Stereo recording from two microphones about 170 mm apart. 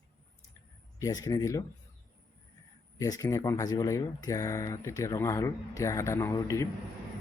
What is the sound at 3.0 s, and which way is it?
Speech, 20° left (ahead or behind).